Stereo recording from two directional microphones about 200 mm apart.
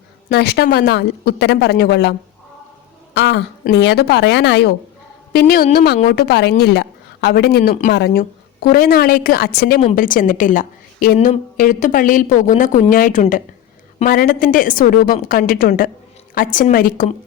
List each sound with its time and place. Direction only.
0.3 s speech: 55° left (ahead or behind)
3.2 s a woman's voice: 60° left (ahead or behind); by 17.1 s 45° left (ahead or behind)